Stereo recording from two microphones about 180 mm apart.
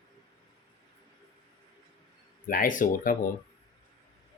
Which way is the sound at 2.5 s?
50° left (ahead or behind).